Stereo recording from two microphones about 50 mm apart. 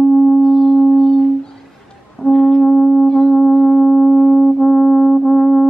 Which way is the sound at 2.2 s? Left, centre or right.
Centre.